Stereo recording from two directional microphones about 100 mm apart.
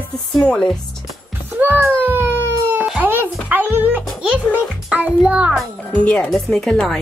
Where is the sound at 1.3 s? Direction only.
20° right (ahead or behind).